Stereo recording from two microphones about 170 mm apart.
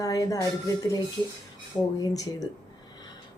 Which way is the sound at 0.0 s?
20° left (ahead or behind).